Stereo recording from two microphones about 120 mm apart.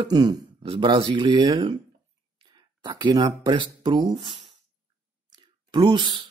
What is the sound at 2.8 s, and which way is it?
Speech, 40° right (ahead or behind).